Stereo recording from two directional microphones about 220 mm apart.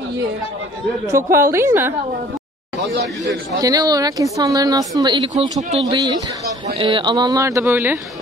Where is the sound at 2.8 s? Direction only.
55° right (ahead or behind).